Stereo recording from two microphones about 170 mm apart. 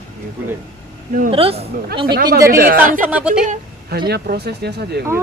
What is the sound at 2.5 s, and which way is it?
Speech, 60° right (ahead or behind).